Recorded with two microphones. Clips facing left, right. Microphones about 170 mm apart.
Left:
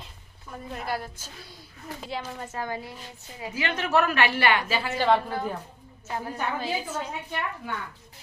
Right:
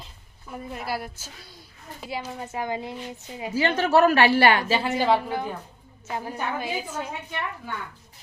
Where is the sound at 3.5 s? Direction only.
30° right (ahead or behind).